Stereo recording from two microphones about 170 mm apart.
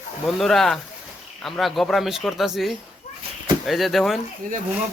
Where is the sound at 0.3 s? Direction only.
Centre (ahead or behind).